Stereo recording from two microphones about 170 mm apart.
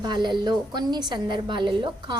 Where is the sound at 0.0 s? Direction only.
25° right (ahead or behind).